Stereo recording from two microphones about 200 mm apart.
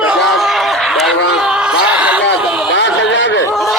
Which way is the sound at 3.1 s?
65° left (ahead or behind).